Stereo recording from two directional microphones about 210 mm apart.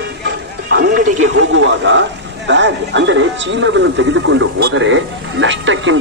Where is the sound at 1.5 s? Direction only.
60° right (ahead or behind).